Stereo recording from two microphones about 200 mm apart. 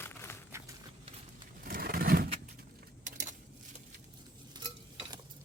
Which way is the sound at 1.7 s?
45° right (ahead or behind).